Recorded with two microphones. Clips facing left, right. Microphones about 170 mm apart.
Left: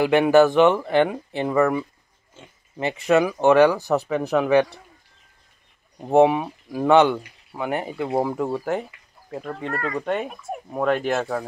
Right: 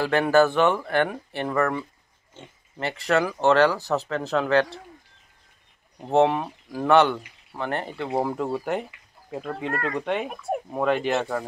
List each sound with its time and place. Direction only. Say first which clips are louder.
0.0 s speech: left 4 dB; 15° left (ahead or behind)
5.9 s speech: left 4 dB; 10° left (ahead or behind)